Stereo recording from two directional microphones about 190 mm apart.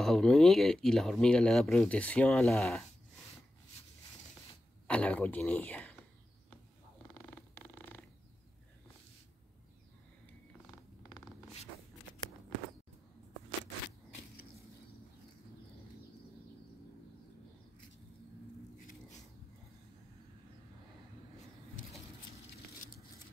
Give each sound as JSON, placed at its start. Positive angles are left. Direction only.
{"t": 0.0, "sound": "speech", "side_deg": 0}
{"t": 4.8, "sound": "speech", "side_deg": 5}
{"t": 7.2, "sound": "purr", "side_deg": 10}